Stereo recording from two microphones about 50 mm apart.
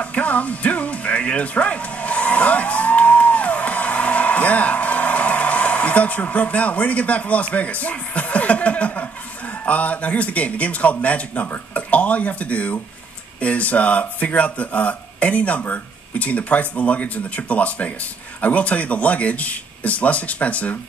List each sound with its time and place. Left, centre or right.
0.0 s music: left
9.7 s speech: left